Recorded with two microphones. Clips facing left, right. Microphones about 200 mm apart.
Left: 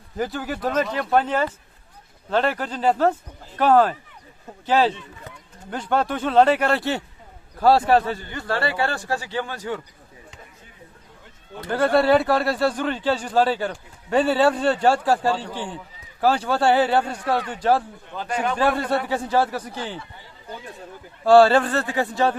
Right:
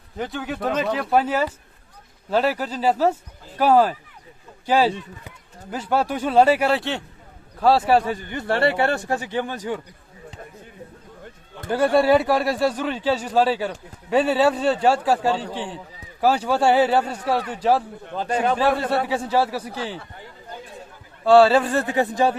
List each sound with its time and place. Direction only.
0.2 s speech: centre (ahead or behind); by 9.8 s 15° right (ahead or behind)
11.7 s speech: 10° right (ahead or behind)
18.2 s a man's voice: 35° right (ahead or behind)
18.5 s speech: 5° right (ahead or behind)
21.2 s speech: centre (ahead or behind)